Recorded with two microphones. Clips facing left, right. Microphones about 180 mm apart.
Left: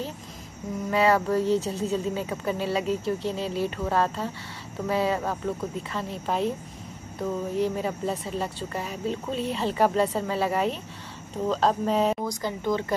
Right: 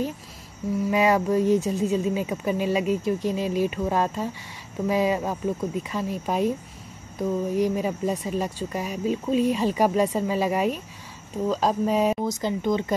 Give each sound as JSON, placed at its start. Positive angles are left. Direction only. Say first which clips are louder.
{"t": 0.8, "sound": "speech", "louder": "right 1 dB", "side_deg": -15}
{"t": 12.3, "sound": "speech", "louder": "right 3 dB", "side_deg": -20}